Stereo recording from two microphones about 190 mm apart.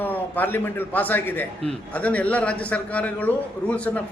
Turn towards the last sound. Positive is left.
turn(degrees=5)  # may be behind; listen again after turning